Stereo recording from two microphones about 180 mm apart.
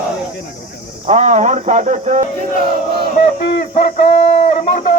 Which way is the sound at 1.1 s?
40° right (ahead or behind).